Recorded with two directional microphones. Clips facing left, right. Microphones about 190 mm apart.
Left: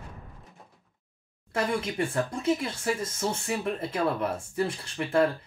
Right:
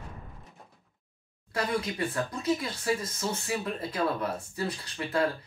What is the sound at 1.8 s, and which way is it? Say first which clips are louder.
Speech: left 2 dB; 25° left (ahead or behind).